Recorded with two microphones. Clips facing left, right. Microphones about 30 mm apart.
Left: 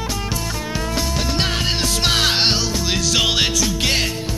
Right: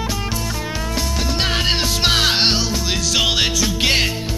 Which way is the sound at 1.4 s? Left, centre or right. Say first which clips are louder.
Right 4 dB; centre.